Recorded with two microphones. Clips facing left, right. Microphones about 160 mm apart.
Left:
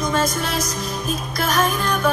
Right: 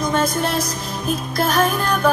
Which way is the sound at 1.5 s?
30° right (ahead or behind).